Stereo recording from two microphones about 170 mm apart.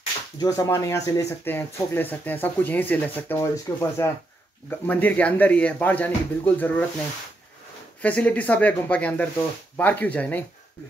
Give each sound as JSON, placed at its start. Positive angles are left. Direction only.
{"t": 0.4, "sound": "speech", "side_deg": 20}
{"t": 8.0, "sound": "speech", "side_deg": 10}